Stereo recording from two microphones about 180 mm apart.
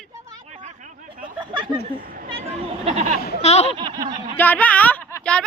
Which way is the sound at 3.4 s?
35° left (ahead or behind).